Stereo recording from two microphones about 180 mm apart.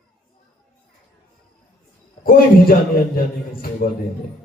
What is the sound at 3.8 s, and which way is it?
Speech, 55° left (ahead or behind).